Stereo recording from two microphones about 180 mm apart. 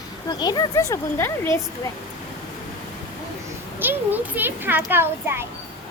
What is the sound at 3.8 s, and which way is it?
A child's voice, 10° right (ahead or behind).